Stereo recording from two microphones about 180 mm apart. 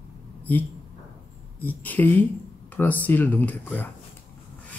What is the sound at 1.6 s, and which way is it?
Speech, 10° left (ahead or behind).